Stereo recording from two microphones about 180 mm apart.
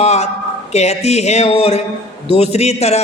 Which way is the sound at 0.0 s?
35° left (ahead or behind).